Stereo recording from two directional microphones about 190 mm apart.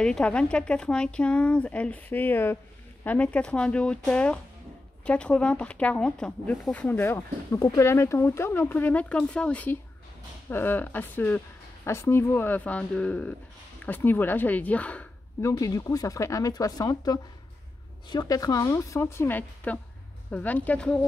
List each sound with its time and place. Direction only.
0.0 s speech: 5° left (ahead or behind)
15.5 s speech: 20° left (ahead or behind)